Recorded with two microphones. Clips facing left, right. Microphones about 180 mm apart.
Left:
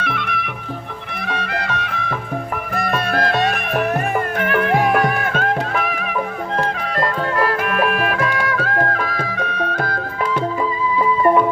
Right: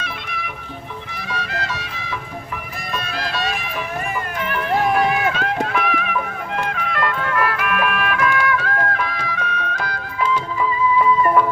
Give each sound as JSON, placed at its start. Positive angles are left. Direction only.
{"t": 0.0, "sound": "music", "side_deg": 60}
{"t": 10.9, "sound": "music", "side_deg": 25}